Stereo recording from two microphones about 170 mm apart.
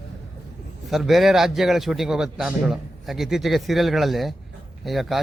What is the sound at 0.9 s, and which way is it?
A man's voice, centre (ahead or behind).